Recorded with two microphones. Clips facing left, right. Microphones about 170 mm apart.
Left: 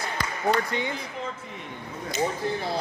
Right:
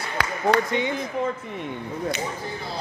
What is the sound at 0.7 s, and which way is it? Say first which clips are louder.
Speech: right 4 dB; 20° right (ahead or behind).